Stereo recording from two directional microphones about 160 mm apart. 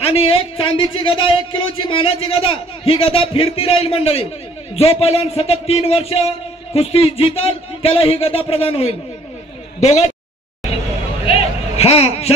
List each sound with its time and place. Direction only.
0.0 s a woman's voice: 35° left (ahead or behind)
11.2 s vehicle: 40° left (ahead or behind)